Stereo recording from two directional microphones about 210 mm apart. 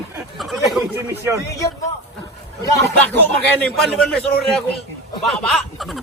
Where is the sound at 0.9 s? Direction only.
15° right (ahead or behind).